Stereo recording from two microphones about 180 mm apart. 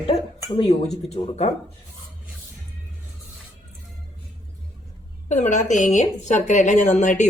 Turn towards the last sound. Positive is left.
turn(degrees=40)  # may be behind; listen again after turning